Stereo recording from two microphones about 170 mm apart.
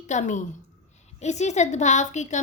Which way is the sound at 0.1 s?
45° left (ahead or behind).